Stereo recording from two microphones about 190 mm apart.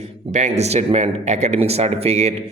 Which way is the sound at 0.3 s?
40° right (ahead or behind).